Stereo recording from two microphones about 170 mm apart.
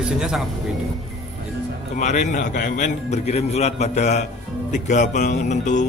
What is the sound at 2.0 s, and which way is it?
A man's voice, 45° left (ahead or behind).